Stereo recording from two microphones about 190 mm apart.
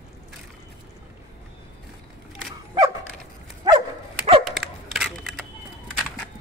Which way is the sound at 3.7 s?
30° right (ahead or behind).